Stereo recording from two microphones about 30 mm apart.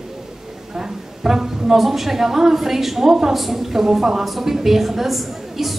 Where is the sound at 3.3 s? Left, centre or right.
Centre.